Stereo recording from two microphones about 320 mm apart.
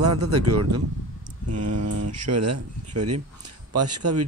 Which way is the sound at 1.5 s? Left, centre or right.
Right.